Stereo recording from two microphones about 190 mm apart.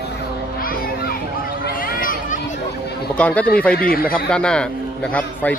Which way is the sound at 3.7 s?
50° left (ahead or behind).